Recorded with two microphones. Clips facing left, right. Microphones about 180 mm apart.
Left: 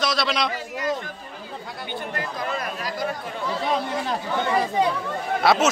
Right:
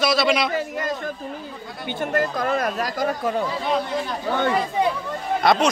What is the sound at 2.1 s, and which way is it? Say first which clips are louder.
Speech: right 9 dB; 45° right (ahead or behind).